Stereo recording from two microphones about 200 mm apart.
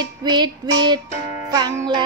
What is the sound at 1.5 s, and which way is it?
Music, 15° right (ahead or behind).